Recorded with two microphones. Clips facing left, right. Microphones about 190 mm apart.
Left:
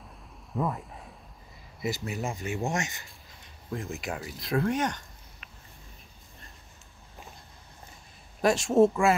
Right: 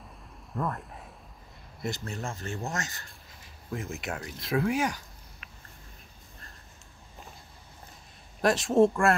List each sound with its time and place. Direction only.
0.6 s speech: centre (ahead or behind)
2.4 s speech: 20° left (ahead or behind)
3.0 s speech: centre (ahead or behind)
8.4 s speech: centre (ahead or behind)